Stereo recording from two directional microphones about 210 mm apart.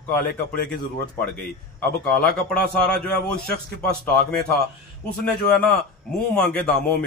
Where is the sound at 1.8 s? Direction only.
5° left (ahead or behind).